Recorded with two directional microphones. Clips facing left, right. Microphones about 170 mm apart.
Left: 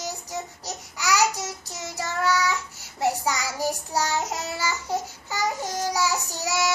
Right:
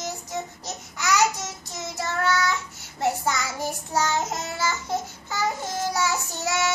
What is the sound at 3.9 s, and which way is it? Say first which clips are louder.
Babbling: right 1 dB; 10° left (ahead or behind).